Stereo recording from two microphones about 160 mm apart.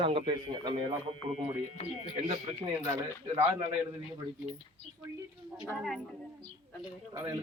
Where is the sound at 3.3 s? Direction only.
25° right (ahead or behind).